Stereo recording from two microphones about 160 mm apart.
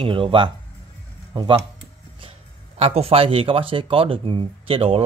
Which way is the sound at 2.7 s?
40° right (ahead or behind).